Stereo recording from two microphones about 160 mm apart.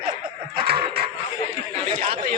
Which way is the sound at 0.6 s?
80° right.